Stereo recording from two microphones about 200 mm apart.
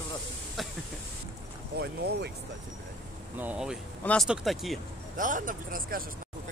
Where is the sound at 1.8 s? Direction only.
55° right (ahead or behind).